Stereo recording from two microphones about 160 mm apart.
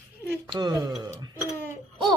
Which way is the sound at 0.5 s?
25° right (ahead or behind).